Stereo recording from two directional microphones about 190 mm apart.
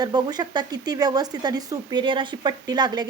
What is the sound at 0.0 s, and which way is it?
A woman's voice, 20° right (ahead or behind).